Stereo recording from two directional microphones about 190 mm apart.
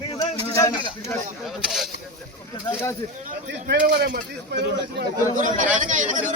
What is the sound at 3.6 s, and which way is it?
Speech, 55° right (ahead or behind).